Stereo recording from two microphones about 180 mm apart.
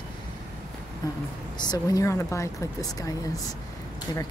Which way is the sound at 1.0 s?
20° left (ahead or behind).